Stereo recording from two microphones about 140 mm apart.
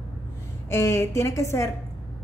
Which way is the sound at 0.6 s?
20° left (ahead or behind).